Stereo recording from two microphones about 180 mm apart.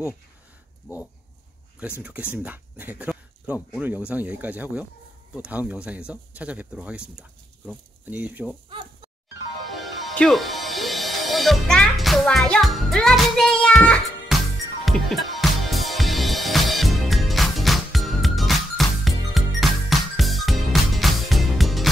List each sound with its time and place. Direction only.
0.9 s dog: 15° left (ahead or behind)
1.8 s speech: 5° right (ahead or behind)
8.6 s a sound: 30° right (ahead or behind)
9.8 s music: centre (ahead or behind)